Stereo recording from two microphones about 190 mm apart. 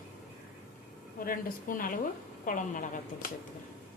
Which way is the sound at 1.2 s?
45° left (ahead or behind).